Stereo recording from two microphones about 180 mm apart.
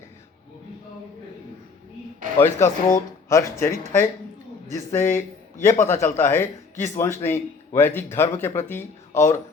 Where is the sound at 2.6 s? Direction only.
15° left (ahead or behind).